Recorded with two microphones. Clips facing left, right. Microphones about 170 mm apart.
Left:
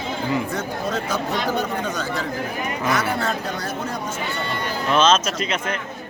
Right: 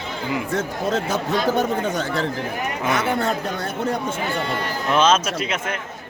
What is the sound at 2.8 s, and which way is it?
Speech, 20° right (ahead or behind).